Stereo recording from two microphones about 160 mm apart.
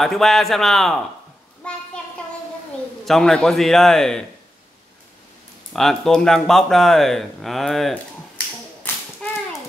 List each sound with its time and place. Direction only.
0.0 s speech: centre (ahead or behind)
3.1 s speech: 5° left (ahead or behind)
5.7 s speech: centre (ahead or behind)
8.8 s clapping: 10° left (ahead or behind)